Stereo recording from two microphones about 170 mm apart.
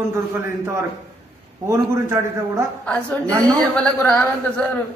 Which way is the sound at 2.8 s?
10° left (ahead or behind).